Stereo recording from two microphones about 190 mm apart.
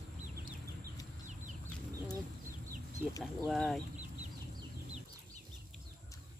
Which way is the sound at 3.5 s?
Centre (ahead or behind).